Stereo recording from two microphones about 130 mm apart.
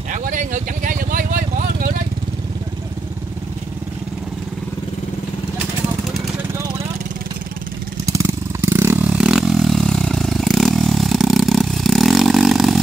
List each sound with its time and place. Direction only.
0.1 s vehicle: 80° right
8.0 s vehicle: 25° right (ahead or behind); by 12.8 s centre (ahead or behind)